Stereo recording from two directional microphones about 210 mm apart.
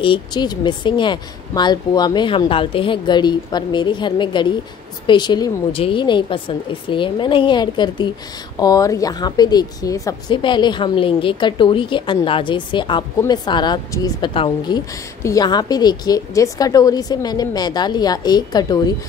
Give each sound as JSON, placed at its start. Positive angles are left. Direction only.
{"t": 0.0, "sound": "a woman's voice", "side_deg": 20}